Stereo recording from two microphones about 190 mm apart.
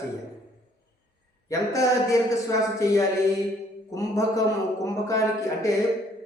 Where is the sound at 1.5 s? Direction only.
15° left (ahead or behind).